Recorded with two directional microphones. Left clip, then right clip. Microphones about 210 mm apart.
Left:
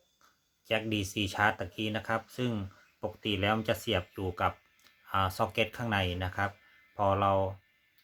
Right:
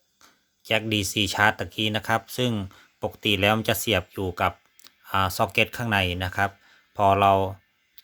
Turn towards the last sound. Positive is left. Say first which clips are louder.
# right 9 dB
turn(degrees=-45)  # may be behind; listen again after turning